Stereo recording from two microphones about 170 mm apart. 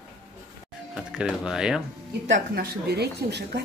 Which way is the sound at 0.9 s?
5° right (ahead or behind).